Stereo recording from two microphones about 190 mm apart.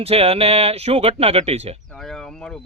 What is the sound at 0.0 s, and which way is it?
Speech, 30° right (ahead or behind).